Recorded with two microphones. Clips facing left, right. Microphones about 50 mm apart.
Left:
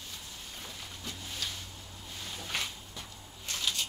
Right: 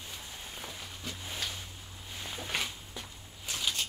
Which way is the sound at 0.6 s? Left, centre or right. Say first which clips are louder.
Even; centre.